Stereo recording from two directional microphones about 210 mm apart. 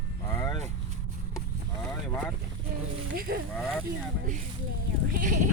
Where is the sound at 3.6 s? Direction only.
Centre (ahead or behind).